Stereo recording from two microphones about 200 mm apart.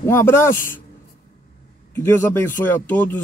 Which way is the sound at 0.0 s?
10° left (ahead or behind).